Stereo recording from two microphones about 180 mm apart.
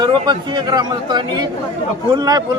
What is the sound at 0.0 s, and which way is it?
A man's voice, 25° right (ahead or behind).